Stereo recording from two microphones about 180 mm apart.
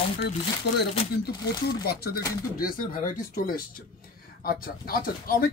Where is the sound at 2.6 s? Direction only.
50° left (ahead or behind).